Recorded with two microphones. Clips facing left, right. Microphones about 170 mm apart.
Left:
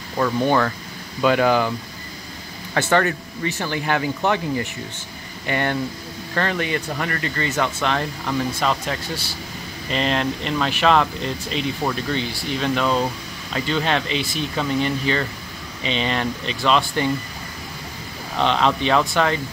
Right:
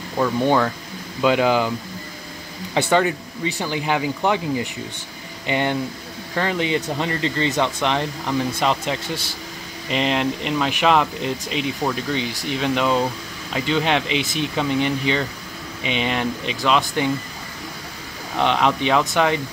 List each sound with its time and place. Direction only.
0.2 s speech: 10° right (ahead or behind)
2.7 s speech: 15° right (ahead or behind)
18.4 s speech: 10° right (ahead or behind)